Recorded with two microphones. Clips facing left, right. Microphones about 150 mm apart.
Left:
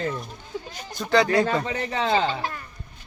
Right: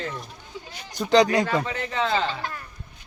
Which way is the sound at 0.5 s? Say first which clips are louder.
Left 6 dB; 45° left (ahead or behind).